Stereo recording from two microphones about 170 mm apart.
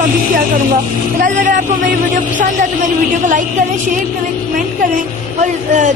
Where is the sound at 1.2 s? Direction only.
50° right (ahead or behind).